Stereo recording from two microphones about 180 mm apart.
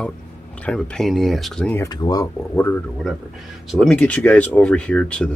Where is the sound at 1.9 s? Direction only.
20° left (ahead or behind).